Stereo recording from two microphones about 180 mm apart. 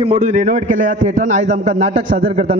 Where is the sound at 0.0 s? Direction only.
40° right (ahead or behind).